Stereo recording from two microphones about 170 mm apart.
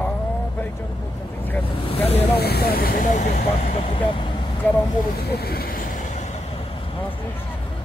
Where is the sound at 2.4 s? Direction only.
70° left (ahead or behind); by 3.3 s 45° left (ahead or behind).